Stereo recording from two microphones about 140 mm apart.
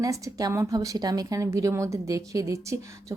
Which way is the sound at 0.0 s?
25° right (ahead or behind).